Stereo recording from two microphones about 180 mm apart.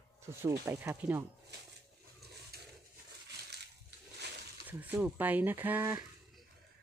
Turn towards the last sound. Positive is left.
turn(degrees=-10)  # may be behind; listen again after turning